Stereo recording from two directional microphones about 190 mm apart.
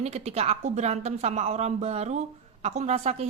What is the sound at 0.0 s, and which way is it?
A woman's voice, 35° right (ahead or behind).